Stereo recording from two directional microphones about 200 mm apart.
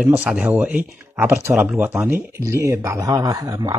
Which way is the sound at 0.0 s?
5° right (ahead or behind).